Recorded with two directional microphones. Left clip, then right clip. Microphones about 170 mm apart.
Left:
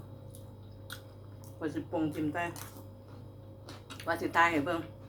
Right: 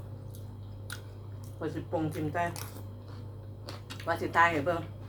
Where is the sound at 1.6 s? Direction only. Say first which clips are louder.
Right 1 dB; 10° left (ahead or behind).